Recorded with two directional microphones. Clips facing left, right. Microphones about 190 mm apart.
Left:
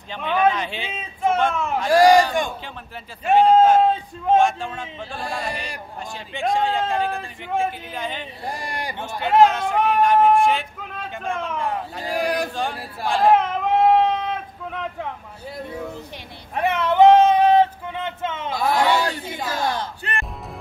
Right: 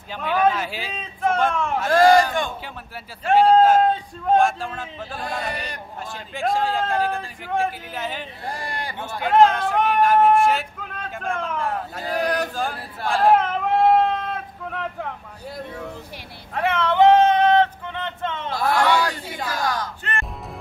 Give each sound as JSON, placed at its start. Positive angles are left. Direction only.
{"t": 0.1, "sound": "speech", "side_deg": -5}
{"t": 0.9, "sound": "speech", "side_deg": 5}
{"t": 3.5, "sound": "speech", "side_deg": 0}
{"t": 5.2, "sound": "speech", "side_deg": 10}
{"t": 6.3, "sound": "speech", "side_deg": 0}
{"t": 8.5, "sound": "speech", "side_deg": 15}
{"t": 9.3, "sound": "speech", "side_deg": 5}
{"t": 12.0, "sound": "speech", "side_deg": 10}
{"t": 13.3, "sound": "a sound", "side_deg": 0}
{"t": 16.5, "sound": "a sound", "side_deg": 20}
{"t": 18.8, "sound": "a sound", "side_deg": 25}
{"t": 19.5, "sound": "speech", "side_deg": 25}
{"t": 20.0, "sound": "speech", "side_deg": 15}